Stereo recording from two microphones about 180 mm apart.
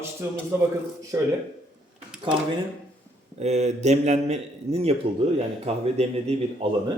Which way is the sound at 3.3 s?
40° right (ahead or behind).